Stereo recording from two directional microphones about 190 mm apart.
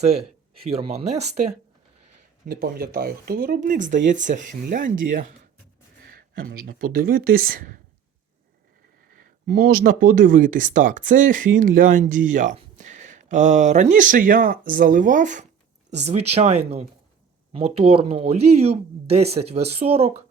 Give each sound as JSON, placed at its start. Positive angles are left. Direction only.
{"t": 0.0, "sound": "speech", "side_deg": -35}
{"t": 2.5, "sound": "speech", "side_deg": -50}
{"t": 9.5, "sound": "speech", "side_deg": -50}